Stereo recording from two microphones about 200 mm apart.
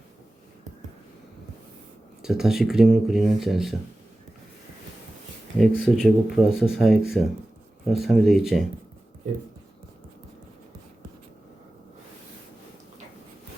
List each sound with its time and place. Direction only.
2.2 s speech: centre (ahead or behind)
5.5 s speech: centre (ahead or behind)